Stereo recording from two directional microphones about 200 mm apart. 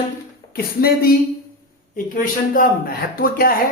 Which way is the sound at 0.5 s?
50° left (ahead or behind).